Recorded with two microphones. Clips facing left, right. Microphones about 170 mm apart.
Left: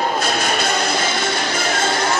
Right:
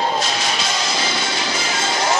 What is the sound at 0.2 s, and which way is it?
Music, 55° left (ahead or behind).